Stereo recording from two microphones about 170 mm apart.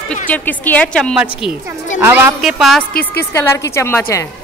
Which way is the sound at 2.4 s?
Centre (ahead or behind).